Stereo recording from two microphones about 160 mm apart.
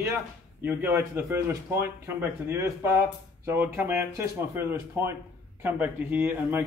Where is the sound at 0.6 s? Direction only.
10° right (ahead or behind).